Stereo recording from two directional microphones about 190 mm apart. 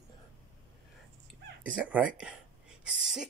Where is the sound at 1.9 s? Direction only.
5° right (ahead or behind).